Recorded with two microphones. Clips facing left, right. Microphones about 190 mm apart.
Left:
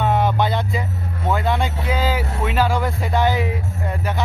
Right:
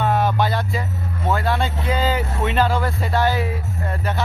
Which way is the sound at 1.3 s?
15° left (ahead or behind).